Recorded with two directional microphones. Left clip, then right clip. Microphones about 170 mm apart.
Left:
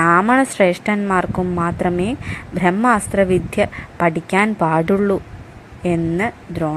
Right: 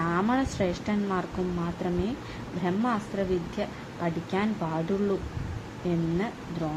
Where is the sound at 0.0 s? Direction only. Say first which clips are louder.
Left 14 dB; 60° left (ahead or behind).